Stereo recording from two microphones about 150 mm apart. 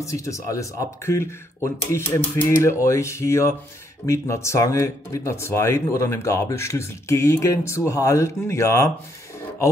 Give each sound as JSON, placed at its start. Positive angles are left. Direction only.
{"t": 0.0, "sound": "speech", "side_deg": 20}